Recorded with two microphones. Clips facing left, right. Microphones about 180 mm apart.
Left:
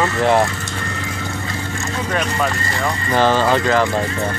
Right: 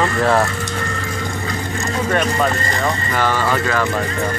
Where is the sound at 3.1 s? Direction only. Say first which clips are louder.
Left 6 dB; 25° left (ahead or behind).